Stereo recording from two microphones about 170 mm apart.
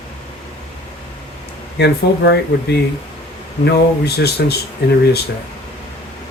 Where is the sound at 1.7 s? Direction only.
80° left.